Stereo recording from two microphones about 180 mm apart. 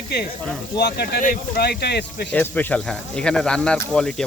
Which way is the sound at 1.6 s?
65° left (ahead or behind).